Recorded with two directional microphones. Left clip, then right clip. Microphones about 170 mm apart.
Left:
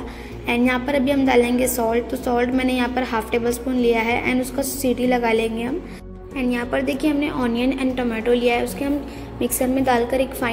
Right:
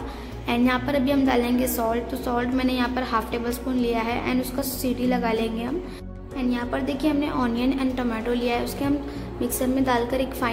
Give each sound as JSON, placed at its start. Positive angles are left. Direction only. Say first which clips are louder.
{"t": 0.5, "sound": "a woman's voice", "louder": "left 3 dB", "side_deg": 10}